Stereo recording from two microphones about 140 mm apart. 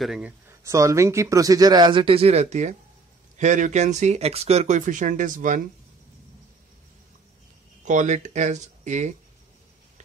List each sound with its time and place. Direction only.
0.0 s speech: 5° right (ahead or behind)
0.7 s speech: 20° right (ahead or behind); by 5.6 s 70° right (ahead or behind)
7.8 s speech: 60° right (ahead or behind)